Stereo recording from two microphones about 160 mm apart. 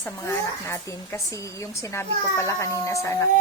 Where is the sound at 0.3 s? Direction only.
20° left (ahead or behind).